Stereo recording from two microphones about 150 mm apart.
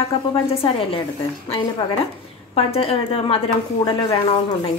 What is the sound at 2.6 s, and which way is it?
A woman's voice, 40° left (ahead or behind).